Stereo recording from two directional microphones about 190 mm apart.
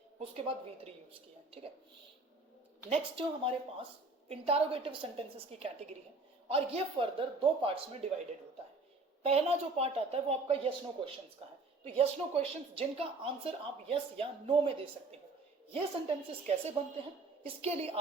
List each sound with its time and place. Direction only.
0.2 s a woman's voice: 30° right (ahead or behind)
2.9 s a woman's voice: 30° right (ahead or behind)
9.2 s a woman's voice: 30° right (ahead or behind)